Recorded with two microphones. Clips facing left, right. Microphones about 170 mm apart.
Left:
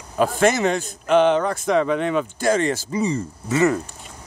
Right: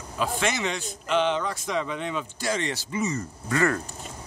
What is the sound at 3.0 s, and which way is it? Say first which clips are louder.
Speech: left 5 dB; 30° left (ahead or behind).